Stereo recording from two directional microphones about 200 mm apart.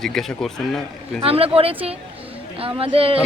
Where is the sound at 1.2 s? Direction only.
30° right (ahead or behind).